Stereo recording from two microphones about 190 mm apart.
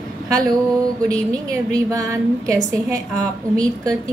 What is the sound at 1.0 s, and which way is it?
A woman's voice, 20° right (ahead or behind).